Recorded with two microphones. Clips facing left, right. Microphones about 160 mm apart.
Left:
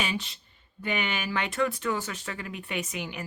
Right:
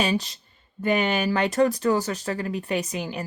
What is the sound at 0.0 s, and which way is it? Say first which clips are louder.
Speech: right 8 dB; 40° right (ahead or behind).